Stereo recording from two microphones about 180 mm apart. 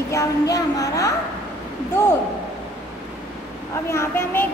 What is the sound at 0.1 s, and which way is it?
Child singing, 20° left (ahead or behind).